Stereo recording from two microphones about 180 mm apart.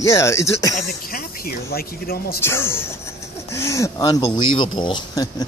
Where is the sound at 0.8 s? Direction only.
55° left (ahead or behind).